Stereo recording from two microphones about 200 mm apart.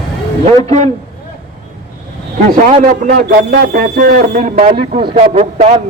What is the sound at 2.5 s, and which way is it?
A man's voice, 45° right (ahead or behind).